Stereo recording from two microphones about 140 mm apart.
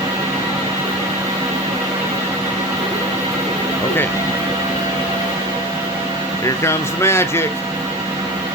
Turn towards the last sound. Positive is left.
turn(degrees=20)  # may be behind; listen again after turning